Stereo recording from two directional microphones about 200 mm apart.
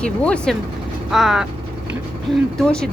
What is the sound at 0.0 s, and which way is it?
Speech, 5° left (ahead or behind).